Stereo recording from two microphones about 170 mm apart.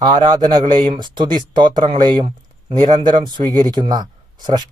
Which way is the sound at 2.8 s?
45° right (ahead or behind).